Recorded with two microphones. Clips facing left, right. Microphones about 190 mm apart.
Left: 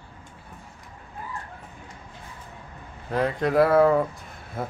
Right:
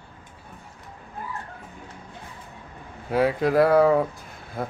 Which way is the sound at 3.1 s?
5° right (ahead or behind).